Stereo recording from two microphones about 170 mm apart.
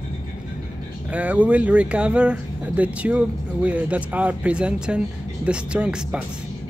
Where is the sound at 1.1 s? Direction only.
10° right (ahead or behind).